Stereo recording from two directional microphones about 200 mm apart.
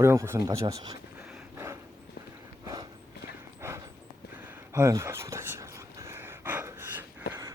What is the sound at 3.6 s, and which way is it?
Dog, 15° right (ahead or behind).